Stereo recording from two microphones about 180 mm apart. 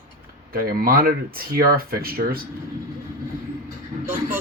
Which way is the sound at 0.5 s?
55° right (ahead or behind).